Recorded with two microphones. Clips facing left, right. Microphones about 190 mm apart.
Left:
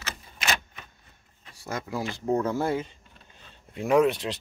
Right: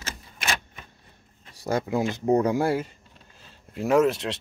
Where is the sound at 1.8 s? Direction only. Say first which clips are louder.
Right 3 dB; 20° right (ahead or behind).